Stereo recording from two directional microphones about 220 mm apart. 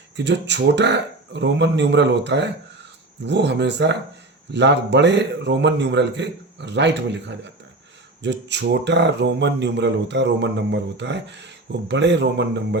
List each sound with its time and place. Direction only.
0.2 s speech: 55° right (ahead or behind)